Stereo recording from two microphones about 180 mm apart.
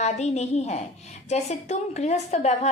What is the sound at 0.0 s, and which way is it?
A woman's voice, 40° left (ahead or behind).